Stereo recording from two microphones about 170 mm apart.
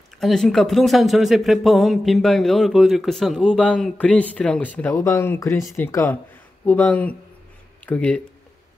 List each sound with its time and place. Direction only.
0.2 s speech: centre (ahead or behind)